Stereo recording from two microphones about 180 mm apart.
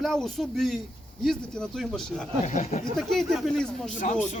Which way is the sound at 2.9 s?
Centre (ahead or behind).